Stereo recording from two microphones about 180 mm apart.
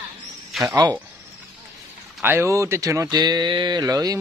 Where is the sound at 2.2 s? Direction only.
10° right (ahead or behind).